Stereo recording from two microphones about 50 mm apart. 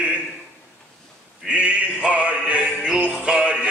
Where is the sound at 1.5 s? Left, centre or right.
Right.